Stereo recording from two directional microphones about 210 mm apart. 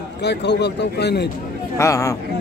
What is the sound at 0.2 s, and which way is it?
A man's voice, 55° left (ahead or behind).